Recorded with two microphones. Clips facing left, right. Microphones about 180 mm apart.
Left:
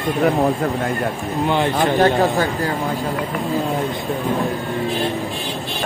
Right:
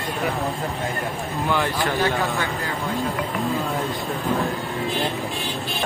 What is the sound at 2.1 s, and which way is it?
Speech, 35° left (ahead or behind).